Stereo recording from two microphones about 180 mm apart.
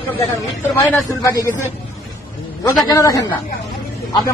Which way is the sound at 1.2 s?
15° left (ahead or behind).